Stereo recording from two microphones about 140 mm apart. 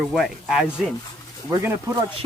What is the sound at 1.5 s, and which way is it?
Speech, 20° right (ahead or behind).